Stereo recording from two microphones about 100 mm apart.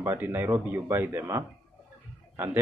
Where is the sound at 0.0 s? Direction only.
20° right (ahead or behind).